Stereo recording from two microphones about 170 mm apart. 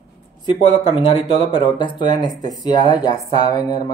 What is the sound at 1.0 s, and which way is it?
Speech, 30° left (ahead or behind).